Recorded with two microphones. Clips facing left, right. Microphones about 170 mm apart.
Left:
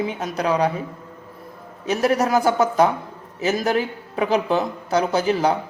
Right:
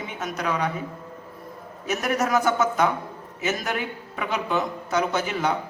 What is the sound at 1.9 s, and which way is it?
A woman's voice, 30° left (ahead or behind).